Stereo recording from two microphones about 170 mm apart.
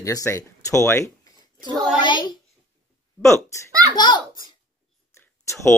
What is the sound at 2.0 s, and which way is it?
Speech, 25° left (ahead or behind).